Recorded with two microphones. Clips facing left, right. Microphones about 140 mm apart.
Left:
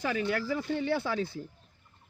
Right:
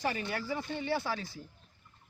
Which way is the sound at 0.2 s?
90° left.